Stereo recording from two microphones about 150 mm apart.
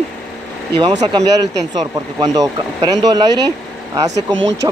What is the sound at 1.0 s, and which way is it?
Speech, 25° right (ahead or behind).